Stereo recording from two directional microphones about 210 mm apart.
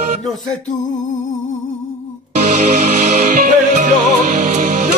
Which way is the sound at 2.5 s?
35° right (ahead or behind).